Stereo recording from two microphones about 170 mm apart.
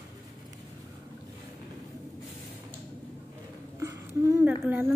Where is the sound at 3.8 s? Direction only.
20° right (ahead or behind).